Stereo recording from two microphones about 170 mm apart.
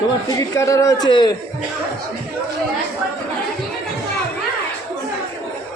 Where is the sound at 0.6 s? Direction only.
20° left (ahead or behind).